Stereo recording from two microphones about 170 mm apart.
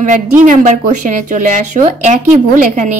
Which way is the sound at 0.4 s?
45° right (ahead or behind).